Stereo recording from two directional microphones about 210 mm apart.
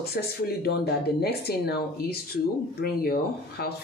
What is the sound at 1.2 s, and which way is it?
Speech, 50° left (ahead or behind).